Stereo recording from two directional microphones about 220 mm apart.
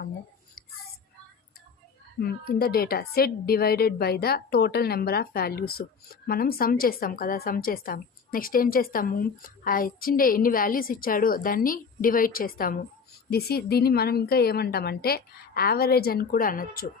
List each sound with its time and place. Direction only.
2.2 s a woman's voice: 45° left (ahead or behind)